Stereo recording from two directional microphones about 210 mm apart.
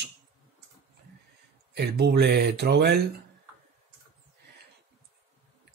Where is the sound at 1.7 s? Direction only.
50° right (ahead or behind).